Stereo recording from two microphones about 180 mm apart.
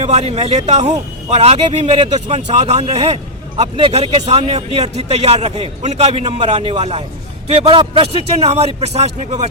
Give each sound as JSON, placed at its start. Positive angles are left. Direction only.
{"t": 0.0, "sound": "a man's voice", "side_deg": -40}